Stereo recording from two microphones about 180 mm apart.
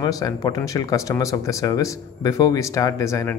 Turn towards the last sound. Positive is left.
turn(degrees=15)  # may be behind; listen again after turning